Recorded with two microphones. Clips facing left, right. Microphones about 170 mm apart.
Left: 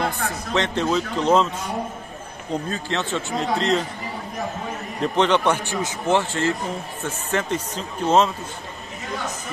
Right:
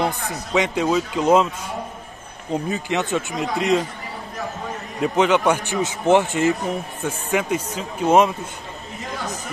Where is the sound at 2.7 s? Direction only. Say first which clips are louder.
Right 5 dB; 15° right (ahead or behind).